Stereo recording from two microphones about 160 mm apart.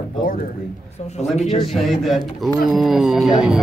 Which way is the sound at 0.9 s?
45° left (ahead or behind).